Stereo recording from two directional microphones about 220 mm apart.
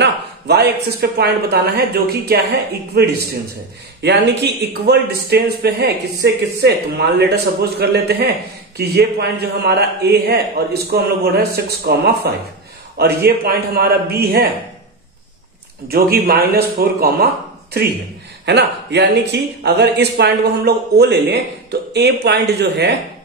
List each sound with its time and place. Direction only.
0.0 s a sound: 50° right (ahead or behind)
1.1 s a man's voice: 45° right (ahead or behind)
15.9 s a man's voice: 45° right (ahead or behind)
18.4 s a man's voice: 50° right (ahead or behind)